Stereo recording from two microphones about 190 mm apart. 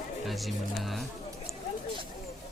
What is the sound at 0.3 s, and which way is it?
Speech, centre (ahead or behind).